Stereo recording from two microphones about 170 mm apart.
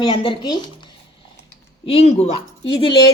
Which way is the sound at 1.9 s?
35° left (ahead or behind).